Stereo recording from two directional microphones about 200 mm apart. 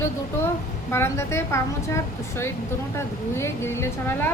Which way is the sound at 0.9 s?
15° left (ahead or behind).